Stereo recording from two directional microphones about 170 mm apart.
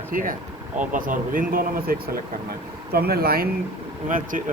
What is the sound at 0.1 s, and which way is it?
Speech, 55° right (ahead or behind).